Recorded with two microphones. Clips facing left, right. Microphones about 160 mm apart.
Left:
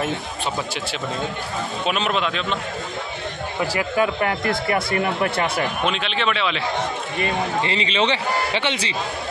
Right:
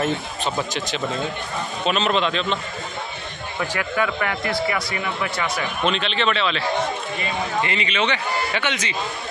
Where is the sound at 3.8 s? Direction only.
30° left (ahead or behind).